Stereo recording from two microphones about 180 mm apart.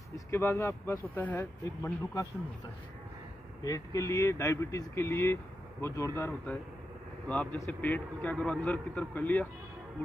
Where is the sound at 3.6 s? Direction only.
20° left (ahead or behind).